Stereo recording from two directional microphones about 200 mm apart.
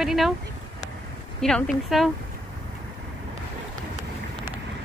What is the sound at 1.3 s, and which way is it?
Speech, centre (ahead or behind).